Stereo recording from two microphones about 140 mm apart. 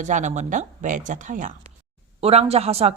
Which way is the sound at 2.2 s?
45° right (ahead or behind).